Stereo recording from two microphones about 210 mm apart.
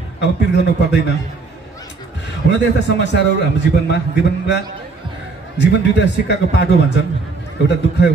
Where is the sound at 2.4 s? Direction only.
55° left (ahead or behind).